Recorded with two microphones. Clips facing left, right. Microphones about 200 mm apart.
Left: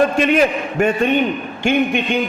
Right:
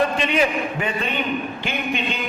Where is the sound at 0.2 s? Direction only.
50° left (ahead or behind).